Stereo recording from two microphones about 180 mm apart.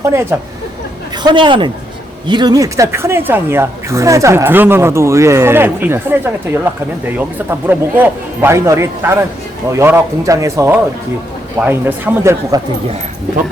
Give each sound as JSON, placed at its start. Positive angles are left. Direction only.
{"t": 0.0, "sound": "a man's voice", "side_deg": -15}